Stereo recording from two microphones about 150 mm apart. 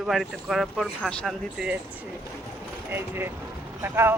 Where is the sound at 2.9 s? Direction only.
15° right (ahead or behind).